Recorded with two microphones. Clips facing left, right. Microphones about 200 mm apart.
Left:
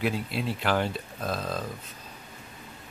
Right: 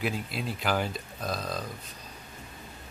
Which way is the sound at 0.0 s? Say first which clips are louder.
Left 3 dB; centre (ahead or behind).